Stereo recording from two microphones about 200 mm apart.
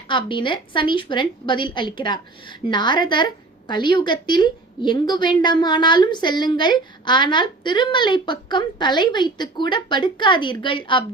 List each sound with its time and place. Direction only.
0.1 s a woman's voice: 25° left (ahead or behind)